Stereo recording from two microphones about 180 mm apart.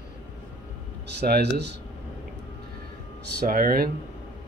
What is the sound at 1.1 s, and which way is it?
Speech, 65° right (ahead or behind).